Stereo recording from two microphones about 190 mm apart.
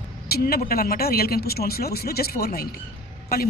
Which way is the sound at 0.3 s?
50° left (ahead or behind).